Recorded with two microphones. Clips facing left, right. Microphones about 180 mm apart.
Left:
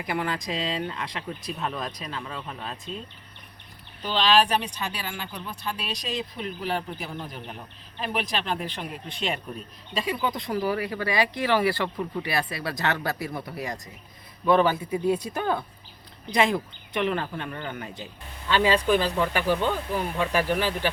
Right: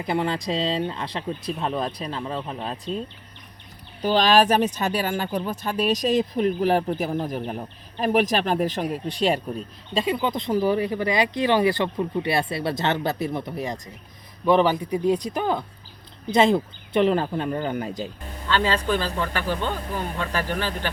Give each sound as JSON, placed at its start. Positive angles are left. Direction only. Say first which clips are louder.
{"t": 0.0, "sound": "speech", "louder": "right 4 dB", "side_deg": -25}
{"t": 4.0, "sound": "speech", "louder": "right 4 dB", "side_deg": -45}
{"t": 16.3, "sound": "speech", "louder": "right 5 dB", "side_deg": -25}
{"t": 18.4, "sound": "speech", "louder": "left 1 dB", "side_deg": 15}